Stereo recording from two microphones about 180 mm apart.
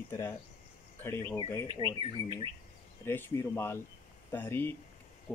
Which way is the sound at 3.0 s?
15° left (ahead or behind).